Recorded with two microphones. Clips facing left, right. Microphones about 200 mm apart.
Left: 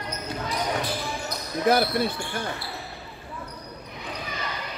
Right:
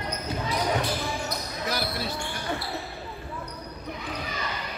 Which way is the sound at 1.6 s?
55° left (ahead or behind).